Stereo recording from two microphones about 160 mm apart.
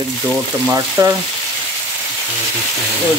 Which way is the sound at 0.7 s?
20° right (ahead or behind).